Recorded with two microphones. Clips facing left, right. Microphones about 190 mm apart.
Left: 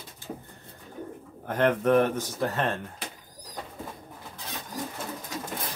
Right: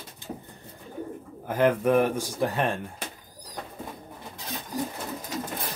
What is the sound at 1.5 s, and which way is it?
Speech, 5° right (ahead or behind).